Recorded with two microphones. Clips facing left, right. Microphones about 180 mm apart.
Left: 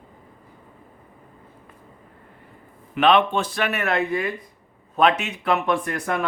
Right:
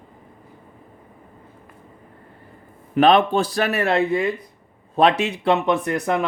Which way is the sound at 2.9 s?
40° right (ahead or behind).